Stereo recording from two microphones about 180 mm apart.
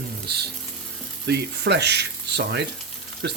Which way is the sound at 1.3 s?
70° right (ahead or behind).